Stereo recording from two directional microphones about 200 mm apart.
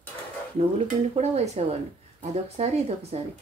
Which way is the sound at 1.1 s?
30° right (ahead or behind).